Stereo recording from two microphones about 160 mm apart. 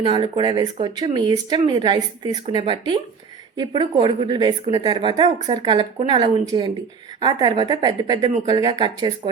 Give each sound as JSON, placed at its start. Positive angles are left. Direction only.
{"t": 0.0, "sound": "speech", "side_deg": -30}